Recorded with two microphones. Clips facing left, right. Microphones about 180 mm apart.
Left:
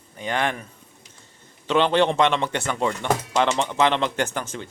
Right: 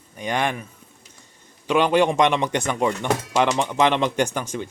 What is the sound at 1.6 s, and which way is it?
Speech, 10° right (ahead or behind).